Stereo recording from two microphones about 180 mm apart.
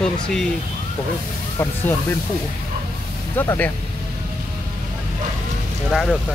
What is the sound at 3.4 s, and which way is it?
Speech, 10° left (ahead or behind).